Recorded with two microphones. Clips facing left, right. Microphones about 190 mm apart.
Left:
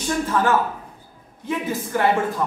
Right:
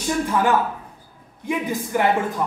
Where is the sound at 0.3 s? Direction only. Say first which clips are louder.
Even; 15° right (ahead or behind).